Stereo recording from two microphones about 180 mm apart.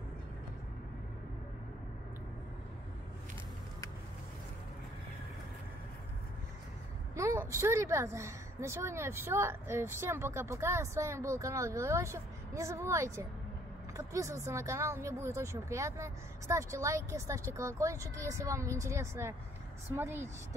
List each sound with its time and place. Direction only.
7.2 s a woman's voice: 15° right (ahead or behind)